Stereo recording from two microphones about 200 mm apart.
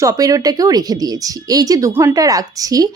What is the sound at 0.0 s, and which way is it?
Speech, 15° right (ahead or behind).